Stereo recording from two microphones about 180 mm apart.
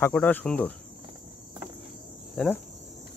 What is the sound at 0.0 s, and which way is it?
Speech, 10° left (ahead or behind).